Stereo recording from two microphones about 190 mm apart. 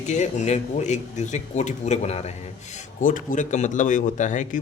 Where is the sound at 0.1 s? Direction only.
40° left (ahead or behind).